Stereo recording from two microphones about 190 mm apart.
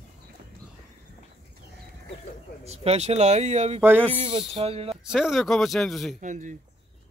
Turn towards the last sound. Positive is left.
turn(degrees=-40)  # may be behind; listen again after turning